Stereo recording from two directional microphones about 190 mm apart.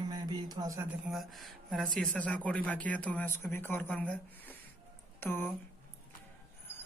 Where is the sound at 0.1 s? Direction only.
20° right (ahead or behind).